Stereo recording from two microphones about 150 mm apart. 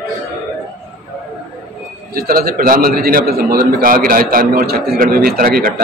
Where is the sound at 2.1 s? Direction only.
85° right.